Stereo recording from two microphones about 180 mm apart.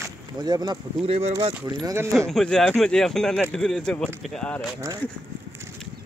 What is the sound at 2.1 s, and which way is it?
Speech, 5° left (ahead or behind).